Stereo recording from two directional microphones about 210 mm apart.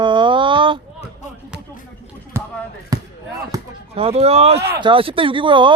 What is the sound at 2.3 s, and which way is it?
Basketball bounce, 10° right (ahead or behind).